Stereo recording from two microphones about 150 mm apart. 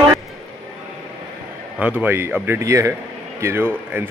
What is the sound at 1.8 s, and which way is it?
A man's voice, 10° right (ahead or behind).